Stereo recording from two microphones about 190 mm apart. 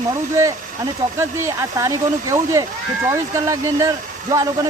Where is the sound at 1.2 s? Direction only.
15° right (ahead or behind).